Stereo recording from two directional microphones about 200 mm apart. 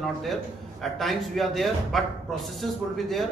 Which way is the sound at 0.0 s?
Centre (ahead or behind).